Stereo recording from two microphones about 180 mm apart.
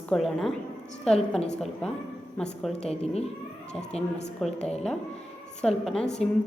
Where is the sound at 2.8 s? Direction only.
35° left (ahead or behind).